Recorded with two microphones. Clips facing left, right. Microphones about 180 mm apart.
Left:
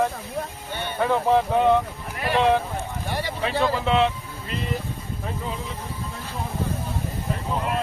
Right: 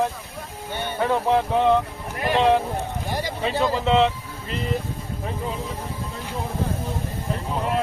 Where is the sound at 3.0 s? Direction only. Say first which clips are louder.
Even; 15° right (ahead or behind).